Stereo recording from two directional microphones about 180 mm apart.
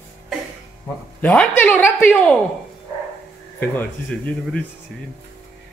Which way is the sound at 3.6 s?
10° left (ahead or behind).